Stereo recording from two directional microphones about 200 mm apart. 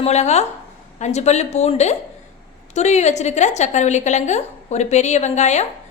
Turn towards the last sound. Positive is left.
turn(degrees=35)  # may be behind; listen again after turning